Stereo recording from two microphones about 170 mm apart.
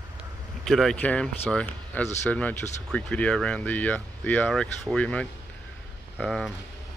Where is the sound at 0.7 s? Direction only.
Centre (ahead or behind).